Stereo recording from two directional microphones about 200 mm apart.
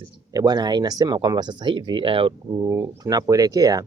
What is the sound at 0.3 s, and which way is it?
Speech, 20° right (ahead or behind).